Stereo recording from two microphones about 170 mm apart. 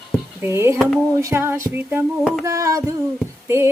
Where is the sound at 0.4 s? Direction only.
15° right (ahead or behind).